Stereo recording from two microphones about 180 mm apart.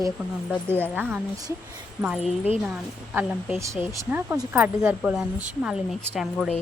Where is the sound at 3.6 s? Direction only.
15° right (ahead or behind).